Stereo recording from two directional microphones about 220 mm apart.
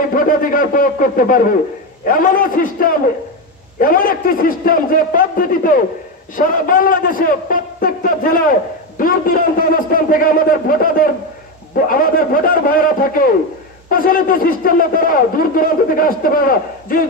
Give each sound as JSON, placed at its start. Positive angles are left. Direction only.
{"t": 0.1, "sound": "a man's voice", "side_deg": 40}